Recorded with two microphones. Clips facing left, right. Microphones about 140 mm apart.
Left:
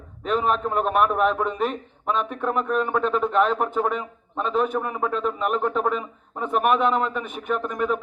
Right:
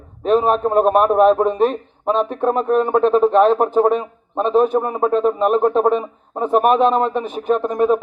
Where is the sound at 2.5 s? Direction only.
30° right (ahead or behind).